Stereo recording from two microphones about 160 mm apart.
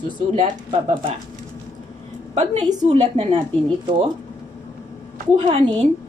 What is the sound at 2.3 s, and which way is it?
Speech, 45° right (ahead or behind).